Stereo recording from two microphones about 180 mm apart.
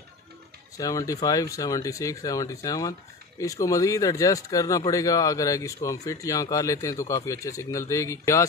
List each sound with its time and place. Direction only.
0.7 s speech: 20° left (ahead or behind)